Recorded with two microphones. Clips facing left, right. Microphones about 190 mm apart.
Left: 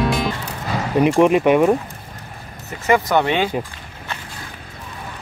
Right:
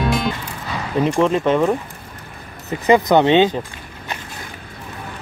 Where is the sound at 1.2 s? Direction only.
15° left (ahead or behind).